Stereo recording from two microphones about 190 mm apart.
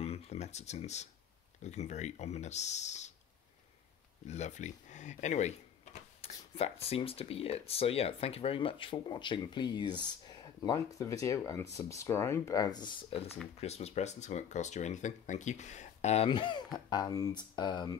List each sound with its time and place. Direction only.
0.0 s speech: 35° left (ahead or behind)
4.3 s speech: 40° left (ahead or behind)
16.3 s speech: 25° left (ahead or behind)